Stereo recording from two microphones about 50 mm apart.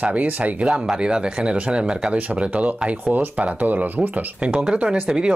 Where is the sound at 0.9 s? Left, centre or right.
Centre.